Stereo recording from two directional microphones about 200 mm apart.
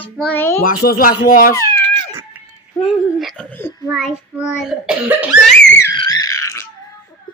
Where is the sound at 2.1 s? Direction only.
5° right (ahead or behind).